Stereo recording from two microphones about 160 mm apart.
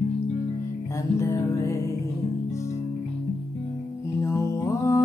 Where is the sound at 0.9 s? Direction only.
20° left (ahead or behind).